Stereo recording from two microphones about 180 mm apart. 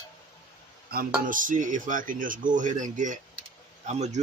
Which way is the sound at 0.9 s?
55° right (ahead or behind).